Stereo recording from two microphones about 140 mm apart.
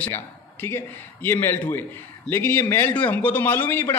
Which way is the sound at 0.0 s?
15° left (ahead or behind).